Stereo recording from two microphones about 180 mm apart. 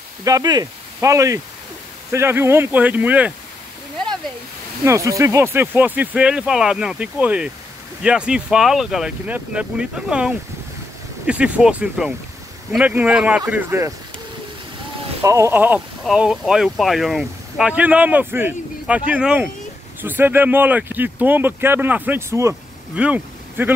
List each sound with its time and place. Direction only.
0.2 s speech: 20° right (ahead or behind)
4.8 s speech: 15° right (ahead or behind)
15.2 s speech: 15° right (ahead or behind)